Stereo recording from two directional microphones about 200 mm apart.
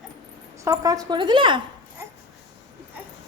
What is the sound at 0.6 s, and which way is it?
Speech, 15° right (ahead or behind).